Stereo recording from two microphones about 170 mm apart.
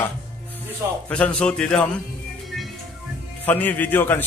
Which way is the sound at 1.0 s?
10° left (ahead or behind).